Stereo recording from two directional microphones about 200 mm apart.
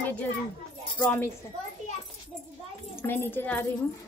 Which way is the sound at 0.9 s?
10° left (ahead or behind).